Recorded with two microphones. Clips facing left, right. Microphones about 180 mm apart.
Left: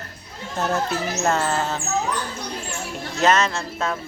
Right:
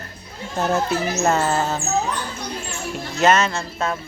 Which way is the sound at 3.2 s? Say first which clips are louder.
Right 2 dB; centre (ahead or behind).